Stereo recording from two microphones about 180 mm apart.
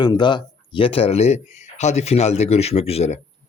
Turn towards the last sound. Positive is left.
turn(degrees=35)  # may be behind; listen again after turning